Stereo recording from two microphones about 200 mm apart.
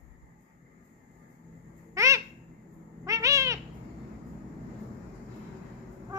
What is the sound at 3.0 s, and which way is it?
Cat, 15° right (ahead or behind).